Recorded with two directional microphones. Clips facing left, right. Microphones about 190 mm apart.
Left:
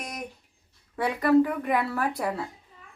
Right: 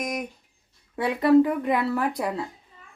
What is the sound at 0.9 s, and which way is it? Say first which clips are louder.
Speech: right 3 dB; 25° right (ahead or behind).